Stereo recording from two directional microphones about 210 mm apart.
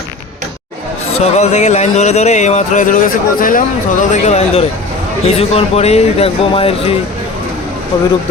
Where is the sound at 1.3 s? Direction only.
35° left (ahead or behind).